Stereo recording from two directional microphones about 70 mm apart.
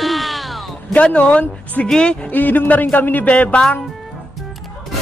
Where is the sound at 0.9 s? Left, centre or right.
Centre.